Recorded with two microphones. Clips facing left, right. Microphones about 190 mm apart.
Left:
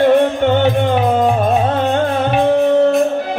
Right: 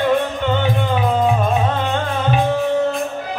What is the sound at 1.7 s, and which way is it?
Music, 50° left (ahead or behind).